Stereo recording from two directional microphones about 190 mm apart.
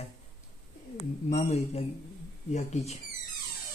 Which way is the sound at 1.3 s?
35° left (ahead or behind).